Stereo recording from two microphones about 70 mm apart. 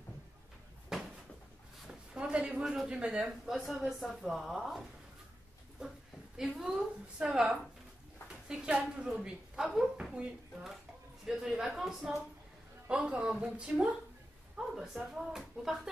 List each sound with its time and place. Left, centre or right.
0.9 s a sound: centre
2.8 s a woman's voice: centre
6.3 s a woman's voice: centre
12.8 s speech: centre
14.8 s speech: centre